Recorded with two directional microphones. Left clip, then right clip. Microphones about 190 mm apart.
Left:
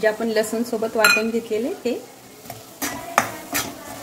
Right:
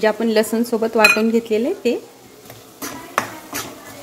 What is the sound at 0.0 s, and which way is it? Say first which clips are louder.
A woman's voice: right 3 dB; 40° right (ahead or behind).